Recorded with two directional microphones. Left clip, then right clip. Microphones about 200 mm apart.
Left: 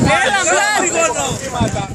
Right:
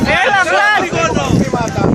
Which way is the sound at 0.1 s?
20° right (ahead or behind).